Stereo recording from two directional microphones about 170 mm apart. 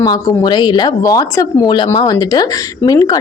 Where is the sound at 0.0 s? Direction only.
25° left (ahead or behind).